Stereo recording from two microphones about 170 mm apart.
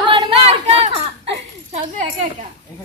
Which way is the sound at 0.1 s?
30° right (ahead or behind).